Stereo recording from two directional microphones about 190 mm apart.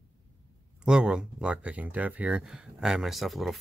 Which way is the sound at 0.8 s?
5° right (ahead or behind).